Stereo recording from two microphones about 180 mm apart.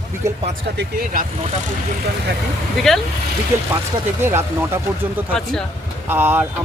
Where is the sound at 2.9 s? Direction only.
Centre (ahead or behind).